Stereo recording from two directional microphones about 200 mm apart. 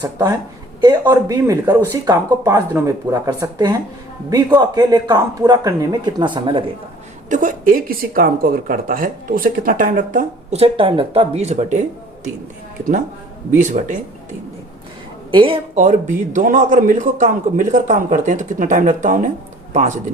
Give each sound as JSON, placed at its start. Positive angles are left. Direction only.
{"t": 0.0, "sound": "speech", "side_deg": -20}
{"t": 7.3, "sound": "speech", "side_deg": -40}
{"t": 13.6, "sound": "speech", "side_deg": -40}
{"t": 15.3, "sound": "speech", "side_deg": -25}